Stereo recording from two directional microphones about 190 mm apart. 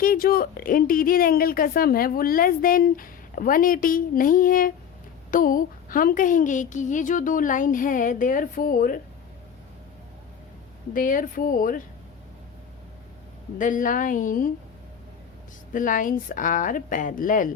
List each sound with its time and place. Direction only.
0.0 s a woman's voice: 50° left (ahead or behind)
10.9 s a woman's voice: 45° left (ahead or behind)
13.6 s a woman's voice: 45° left (ahead or behind)
15.7 s a woman's voice: 45° left (ahead or behind)